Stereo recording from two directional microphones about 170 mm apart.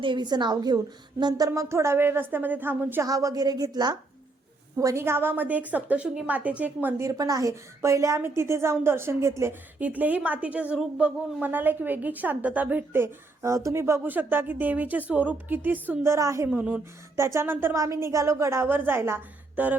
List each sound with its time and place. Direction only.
0.0 s a woman's voice: 25° right (ahead or behind)
16.5 s a woman's voice: 5° right (ahead or behind)